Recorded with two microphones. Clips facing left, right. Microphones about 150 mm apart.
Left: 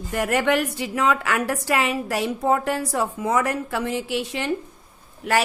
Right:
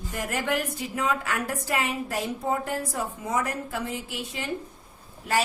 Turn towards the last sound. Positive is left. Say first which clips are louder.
# left 5 dB
turn(degrees=75)  # may be behind; listen again after turning